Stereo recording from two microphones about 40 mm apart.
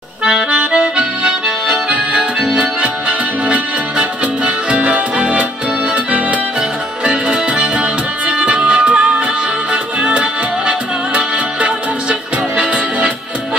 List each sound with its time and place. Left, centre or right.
0.5 s music: right
7.1 s music: right